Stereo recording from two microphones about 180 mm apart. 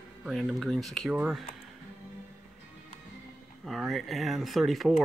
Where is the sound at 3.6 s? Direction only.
Centre (ahead or behind).